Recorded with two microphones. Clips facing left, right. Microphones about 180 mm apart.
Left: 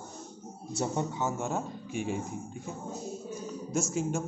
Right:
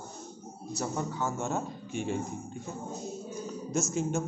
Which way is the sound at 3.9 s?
10° left (ahead or behind).